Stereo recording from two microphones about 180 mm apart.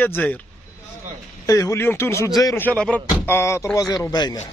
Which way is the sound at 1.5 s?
15° left (ahead or behind).